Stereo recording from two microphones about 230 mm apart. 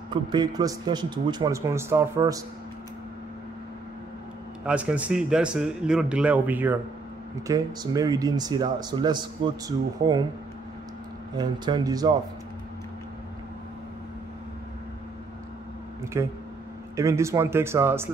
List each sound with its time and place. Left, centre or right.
0.1 s a man's voice: centre
4.6 s a man's voice: centre
11.3 s a man's voice: centre
16.1 s a man's voice: centre